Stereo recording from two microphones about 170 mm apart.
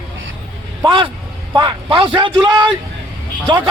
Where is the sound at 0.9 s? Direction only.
30° right (ahead or behind).